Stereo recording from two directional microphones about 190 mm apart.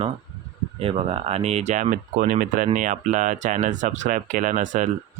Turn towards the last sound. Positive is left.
turn(degrees=-40)  # may be behind; listen again after turning